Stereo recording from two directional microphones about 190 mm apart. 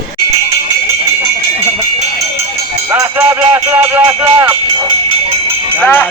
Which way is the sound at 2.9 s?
15° right (ahead or behind).